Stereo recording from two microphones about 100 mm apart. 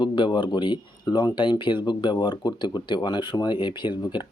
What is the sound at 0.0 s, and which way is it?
Speech, 50° left (ahead or behind).